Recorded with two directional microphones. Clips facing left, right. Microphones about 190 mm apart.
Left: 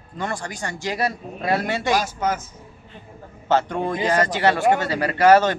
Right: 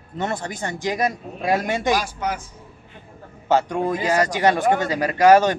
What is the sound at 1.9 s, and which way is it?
Speech, 45° left (ahead or behind).